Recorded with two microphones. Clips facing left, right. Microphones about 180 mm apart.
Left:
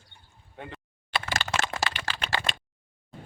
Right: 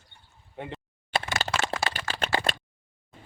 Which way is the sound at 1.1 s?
35° right (ahead or behind).